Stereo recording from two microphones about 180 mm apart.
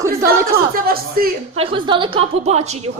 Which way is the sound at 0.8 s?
55° right (ahead or behind).